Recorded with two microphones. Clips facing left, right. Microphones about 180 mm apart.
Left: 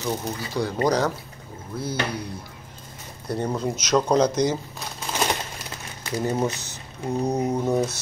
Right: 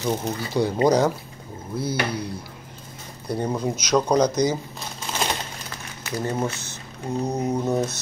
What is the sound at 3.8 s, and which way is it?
Speech, 5° left (ahead or behind).